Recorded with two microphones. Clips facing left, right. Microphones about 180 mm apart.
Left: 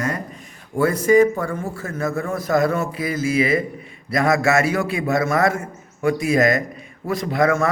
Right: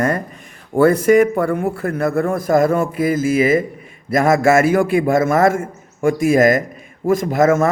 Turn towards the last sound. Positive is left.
turn(degrees=-45)  # may be behind; listen again after turning